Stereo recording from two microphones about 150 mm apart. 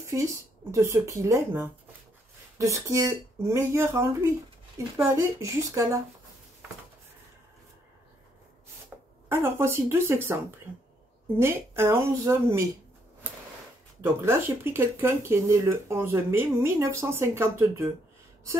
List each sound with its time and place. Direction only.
0.0 s speech: 20° right (ahead or behind)
8.9 s a sound: 10° right (ahead or behind)
9.3 s speech: 15° right (ahead or behind)
14.0 s speech: 15° right (ahead or behind)